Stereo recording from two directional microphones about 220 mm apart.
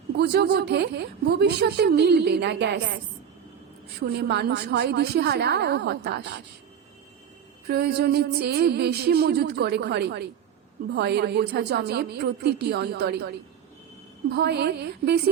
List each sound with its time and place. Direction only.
0.2 s a woman's voice: 50° right (ahead or behind)
4.1 s a woman's voice: 50° right (ahead or behind)
7.7 s a woman's voice: 45° right (ahead or behind)
14.3 s a woman's voice: 50° right (ahead or behind)